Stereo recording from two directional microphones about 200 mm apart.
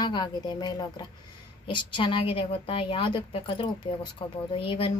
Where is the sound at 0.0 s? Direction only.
20° left (ahead or behind).